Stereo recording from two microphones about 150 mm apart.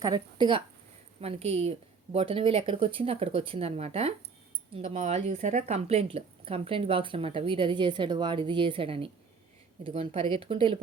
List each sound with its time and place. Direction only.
0.0 s speech: 30° right (ahead or behind)
4.8 s speech: 55° right (ahead or behind); by 10.8 s 35° right (ahead or behind)